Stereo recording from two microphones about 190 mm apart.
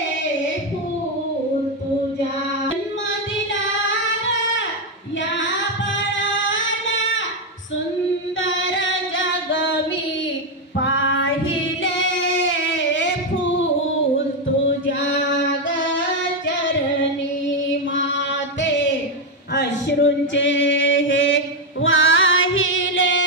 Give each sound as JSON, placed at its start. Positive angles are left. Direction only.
{"t": 8.4, "sound": "singing", "side_deg": 80}
{"t": 10.8, "sound": "child singing", "side_deg": 80}
{"t": 11.8, "sound": "female singing", "side_deg": 85}
{"t": 18.1, "sound": "music", "side_deg": 75}
{"t": 19.5, "sound": "male singing", "side_deg": 65}
{"t": 21.8, "sound": "music", "side_deg": 90}